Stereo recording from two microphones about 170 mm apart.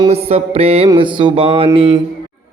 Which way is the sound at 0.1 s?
35° right (ahead or behind).